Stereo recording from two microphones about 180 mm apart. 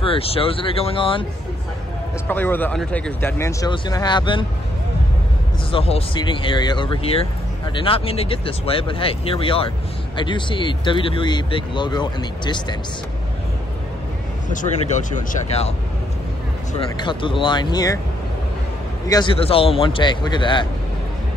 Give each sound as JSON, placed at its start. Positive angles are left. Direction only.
{"t": 0.0, "sound": "speech", "side_deg": 30}
{"t": 2.2, "sound": "speech", "side_deg": 10}
{"t": 5.7, "sound": "speech", "side_deg": 30}
{"t": 14.5, "sound": "speech", "side_deg": 45}
{"t": 16.9, "sound": "speech", "side_deg": 25}
{"t": 19.0, "sound": "speech", "side_deg": 25}